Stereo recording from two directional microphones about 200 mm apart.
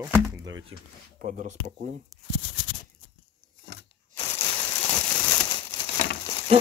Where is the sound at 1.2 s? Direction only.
40° right (ahead or behind).